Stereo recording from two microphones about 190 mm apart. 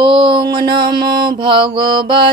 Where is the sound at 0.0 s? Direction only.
25° right (ahead or behind).